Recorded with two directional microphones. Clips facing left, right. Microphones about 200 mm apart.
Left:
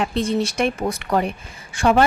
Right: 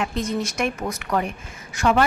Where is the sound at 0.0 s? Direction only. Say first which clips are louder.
Left 4 dB; 30° left (ahead or behind).